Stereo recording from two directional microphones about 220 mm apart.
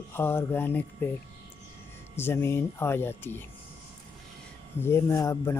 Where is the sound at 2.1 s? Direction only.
10° left (ahead or behind).